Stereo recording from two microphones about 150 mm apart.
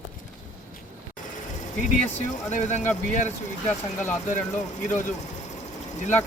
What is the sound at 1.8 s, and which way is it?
Speech, 55° left (ahead or behind).